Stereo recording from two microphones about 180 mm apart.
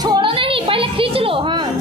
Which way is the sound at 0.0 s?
25° right (ahead or behind).